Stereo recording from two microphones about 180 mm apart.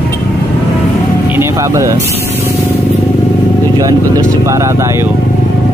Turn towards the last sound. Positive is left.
turn(degrees=-15)  # may be behind; listen again after turning